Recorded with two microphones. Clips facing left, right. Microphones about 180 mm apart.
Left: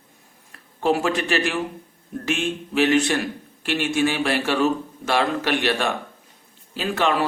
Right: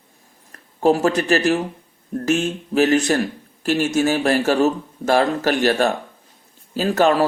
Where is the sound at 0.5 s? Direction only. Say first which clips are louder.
Right 4 dB; 40° right (ahead or behind).